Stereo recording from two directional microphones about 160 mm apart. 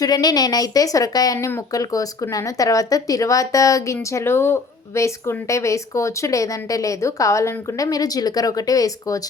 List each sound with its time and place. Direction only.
0.0 s a woman's voice: 25° left (ahead or behind)